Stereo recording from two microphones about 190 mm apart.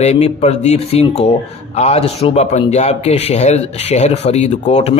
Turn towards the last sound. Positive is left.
turn(degrees=35)  # may be behind; listen again after turning